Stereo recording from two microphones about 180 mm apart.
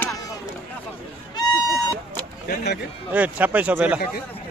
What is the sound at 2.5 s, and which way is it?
Speech, 65° left (ahead or behind).